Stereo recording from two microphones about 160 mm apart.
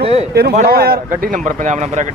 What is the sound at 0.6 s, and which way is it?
Speech, 70° right (ahead or behind).